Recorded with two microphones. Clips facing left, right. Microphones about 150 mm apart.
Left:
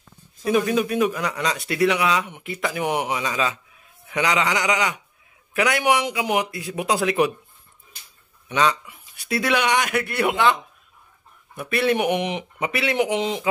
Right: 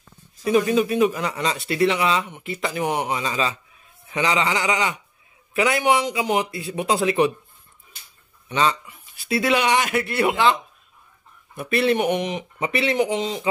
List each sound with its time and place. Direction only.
0.5 s a man's voice: centre (ahead or behind)
2.8 s a man's voice: 10° left (ahead or behind)
8.5 s a man's voice: centre (ahead or behind)
12.5 s speech: centre (ahead or behind)
12.9 s speech: 15° left (ahead or behind)